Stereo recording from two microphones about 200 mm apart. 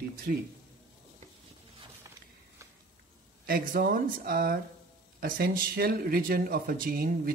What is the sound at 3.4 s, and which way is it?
Speech, 45° right (ahead or behind).